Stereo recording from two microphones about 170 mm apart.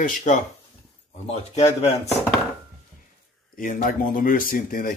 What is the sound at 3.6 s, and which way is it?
Speech, 55° left (ahead or behind).